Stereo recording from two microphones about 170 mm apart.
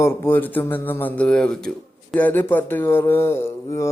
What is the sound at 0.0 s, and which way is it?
Speech, 10° left (ahead or behind).